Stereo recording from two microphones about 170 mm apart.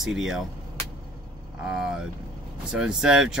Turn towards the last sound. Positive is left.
turn(degrees=-5)  # may be behind; listen again after turning